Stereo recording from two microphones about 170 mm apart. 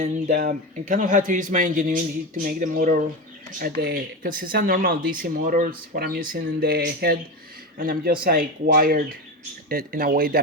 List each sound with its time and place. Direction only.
0.0 s speech: 50° right (ahead or behind)
3.6 s speech: 65° right (ahead or behind)